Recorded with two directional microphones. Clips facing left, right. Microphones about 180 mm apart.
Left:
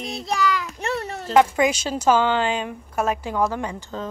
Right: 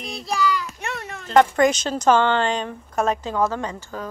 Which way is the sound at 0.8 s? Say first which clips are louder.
Left 5 dB; 35° left (ahead or behind).